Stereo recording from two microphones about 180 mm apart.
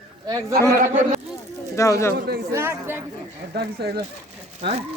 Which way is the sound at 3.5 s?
65° right (ahead or behind).